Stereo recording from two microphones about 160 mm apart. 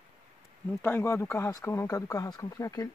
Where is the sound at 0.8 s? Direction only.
15° left (ahead or behind).